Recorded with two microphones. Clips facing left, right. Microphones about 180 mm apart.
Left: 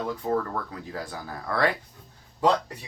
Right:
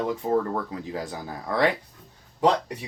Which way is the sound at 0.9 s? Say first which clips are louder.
Right 3 dB; 20° right (ahead or behind).